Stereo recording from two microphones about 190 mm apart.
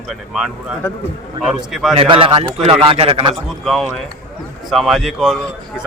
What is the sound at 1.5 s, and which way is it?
Speech, 5° right (ahead or behind).